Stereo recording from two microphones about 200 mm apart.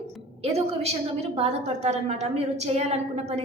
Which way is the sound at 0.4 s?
30° right (ahead or behind).